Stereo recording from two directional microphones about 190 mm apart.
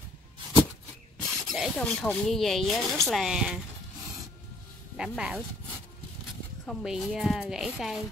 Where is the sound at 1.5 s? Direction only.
Centre (ahead or behind).